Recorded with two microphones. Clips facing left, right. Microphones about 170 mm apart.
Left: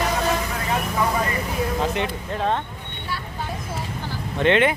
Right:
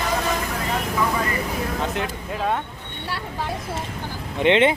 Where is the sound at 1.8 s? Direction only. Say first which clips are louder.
Left 2 dB; centre (ahead or behind).